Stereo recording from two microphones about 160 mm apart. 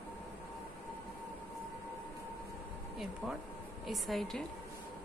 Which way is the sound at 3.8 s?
Centre (ahead or behind).